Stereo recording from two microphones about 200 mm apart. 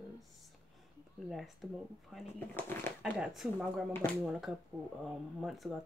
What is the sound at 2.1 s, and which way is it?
Speech, 10° left (ahead or behind).